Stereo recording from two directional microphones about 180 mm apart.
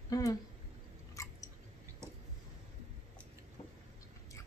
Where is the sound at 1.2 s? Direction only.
15° left (ahead or behind).